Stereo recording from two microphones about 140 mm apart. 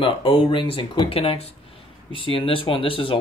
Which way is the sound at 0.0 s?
40° left (ahead or behind).